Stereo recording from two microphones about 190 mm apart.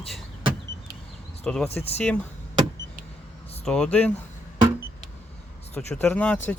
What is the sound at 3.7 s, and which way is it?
Speech, 5° left (ahead or behind).